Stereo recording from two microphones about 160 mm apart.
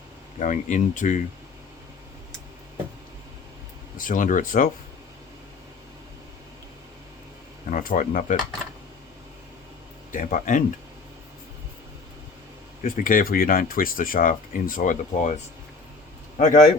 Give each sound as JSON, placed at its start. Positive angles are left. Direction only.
{"t": 0.3, "sound": "speech", "side_deg": 50}
{"t": 3.9, "sound": "speech", "side_deg": 55}
{"t": 7.7, "sound": "speech", "side_deg": 60}
{"t": 10.1, "sound": "speech", "side_deg": 55}
{"t": 12.8, "sound": "speech", "side_deg": 60}
{"t": 16.4, "sound": "speech", "side_deg": 50}